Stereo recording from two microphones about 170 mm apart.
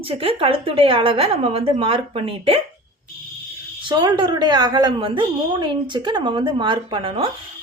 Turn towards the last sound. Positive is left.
turn(degrees=-30)  # may be behind; listen again after turning